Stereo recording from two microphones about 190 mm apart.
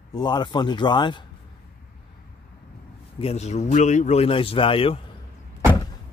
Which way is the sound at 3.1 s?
35° left (ahead or behind).